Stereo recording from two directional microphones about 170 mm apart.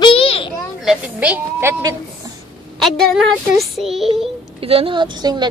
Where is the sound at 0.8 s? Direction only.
5° right (ahead or behind).